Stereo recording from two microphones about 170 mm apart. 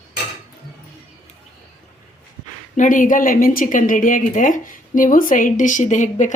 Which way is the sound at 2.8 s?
50° left (ahead or behind).